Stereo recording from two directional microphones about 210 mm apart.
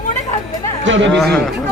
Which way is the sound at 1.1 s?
5° left (ahead or behind).